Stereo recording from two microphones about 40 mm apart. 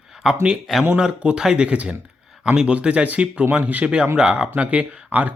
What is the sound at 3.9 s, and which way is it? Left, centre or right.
Speech, right.